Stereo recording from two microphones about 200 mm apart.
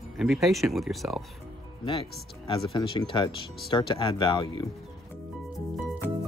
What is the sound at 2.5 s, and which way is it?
Speech, 25° left (ahead or behind).